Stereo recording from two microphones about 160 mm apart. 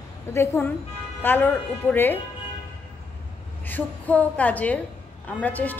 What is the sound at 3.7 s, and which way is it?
A woman's voice, 10° left (ahead or behind).